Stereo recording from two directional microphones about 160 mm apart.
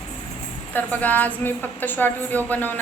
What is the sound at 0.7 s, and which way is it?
A woman's voice, 10° left (ahead or behind).